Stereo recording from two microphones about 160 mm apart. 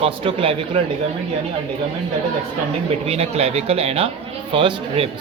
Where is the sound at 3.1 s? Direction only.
40° right (ahead or behind).